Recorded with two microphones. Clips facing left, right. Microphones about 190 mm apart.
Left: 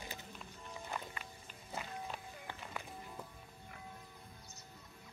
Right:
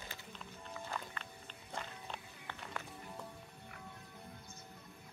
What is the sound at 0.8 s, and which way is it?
Music, 15° left (ahead or behind).